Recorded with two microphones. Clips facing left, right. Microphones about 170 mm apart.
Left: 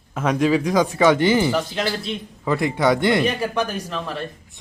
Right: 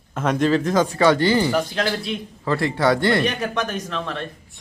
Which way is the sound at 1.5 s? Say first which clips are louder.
Right 1 dB; centre (ahead or behind).